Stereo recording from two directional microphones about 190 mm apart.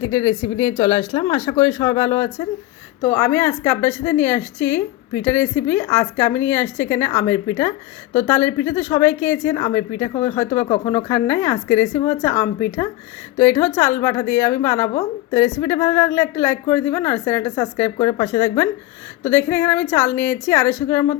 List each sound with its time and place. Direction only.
0.0 s a woman's voice: 20° left (ahead or behind)